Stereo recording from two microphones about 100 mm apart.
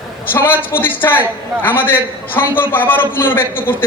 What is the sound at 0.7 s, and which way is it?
A man's voice, 20° left (ahead or behind).